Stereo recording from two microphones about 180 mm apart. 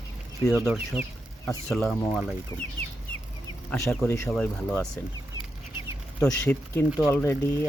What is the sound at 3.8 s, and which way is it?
Speech, 15° left (ahead or behind).